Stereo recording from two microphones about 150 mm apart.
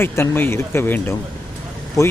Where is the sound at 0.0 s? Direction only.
15° left (ahead or behind).